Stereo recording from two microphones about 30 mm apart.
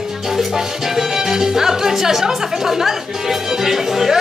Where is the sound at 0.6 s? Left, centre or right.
Centre.